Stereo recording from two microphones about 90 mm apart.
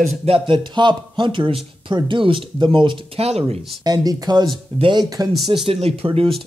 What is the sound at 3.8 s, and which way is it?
Speech, 45° right (ahead or behind).